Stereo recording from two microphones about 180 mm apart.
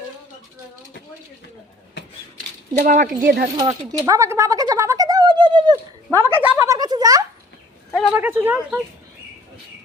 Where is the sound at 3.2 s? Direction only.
60° right (ahead or behind).